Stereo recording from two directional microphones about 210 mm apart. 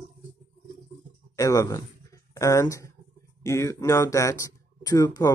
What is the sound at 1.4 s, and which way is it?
Speech, 15° left (ahead or behind).